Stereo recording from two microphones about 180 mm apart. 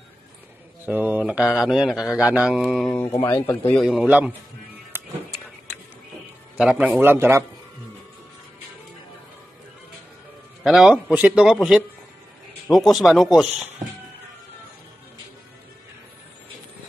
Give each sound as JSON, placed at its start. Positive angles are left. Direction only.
{"t": 0.8, "sound": "speech", "side_deg": -10}
{"t": 2.9, "sound": "speech", "side_deg": 10}
{"t": 3.2, "sound": "speech", "side_deg": 25}
{"t": 3.6, "sound": "speech", "side_deg": 0}
{"t": 6.5, "sound": "a man's voice", "side_deg": -5}
{"t": 10.6, "sound": "speech", "side_deg": -5}